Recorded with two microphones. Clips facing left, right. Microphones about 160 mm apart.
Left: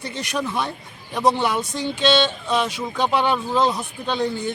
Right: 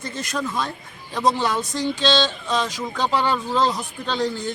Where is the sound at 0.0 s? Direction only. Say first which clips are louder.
Even; 70° left (ahead or behind).